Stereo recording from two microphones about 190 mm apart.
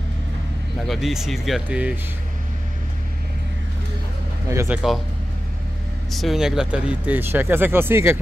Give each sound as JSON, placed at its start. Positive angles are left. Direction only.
{"t": 0.8, "sound": "speech", "side_deg": 0}
{"t": 4.5, "sound": "speech", "side_deg": -15}
{"t": 6.1, "sound": "speech", "side_deg": 0}